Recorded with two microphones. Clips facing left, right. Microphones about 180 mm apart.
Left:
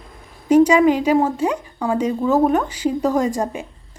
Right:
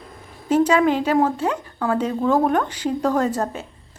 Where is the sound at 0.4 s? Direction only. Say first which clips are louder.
Left 4 dB; 10° left (ahead or behind).